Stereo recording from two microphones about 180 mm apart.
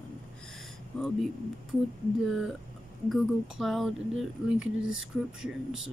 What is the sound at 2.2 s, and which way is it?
Speech, centre (ahead or behind).